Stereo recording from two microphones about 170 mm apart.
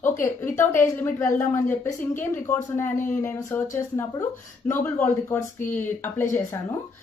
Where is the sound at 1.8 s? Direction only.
15° left (ahead or behind).